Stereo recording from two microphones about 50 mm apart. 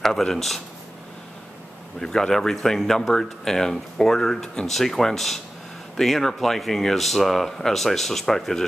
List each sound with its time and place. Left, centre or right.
0.0 s speech: centre
2.0 s speech: centre